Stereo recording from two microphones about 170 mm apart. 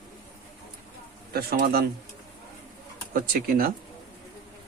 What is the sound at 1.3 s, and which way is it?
Speech, 65° right (ahead or behind).